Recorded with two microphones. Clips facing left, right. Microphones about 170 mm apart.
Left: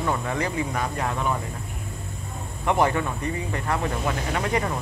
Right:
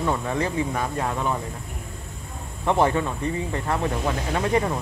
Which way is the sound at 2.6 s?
20° right (ahead or behind).